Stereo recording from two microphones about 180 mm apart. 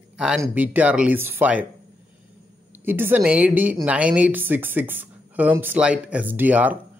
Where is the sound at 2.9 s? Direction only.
10° right (ahead or behind).